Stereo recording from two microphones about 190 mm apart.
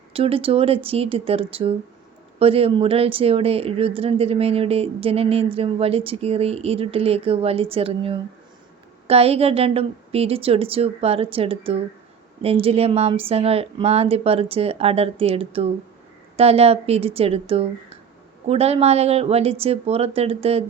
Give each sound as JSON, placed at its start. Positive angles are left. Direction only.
{"t": 0.1, "sound": "speech", "side_deg": -30}